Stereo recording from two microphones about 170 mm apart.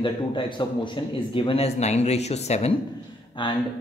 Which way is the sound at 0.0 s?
30° left (ahead or behind).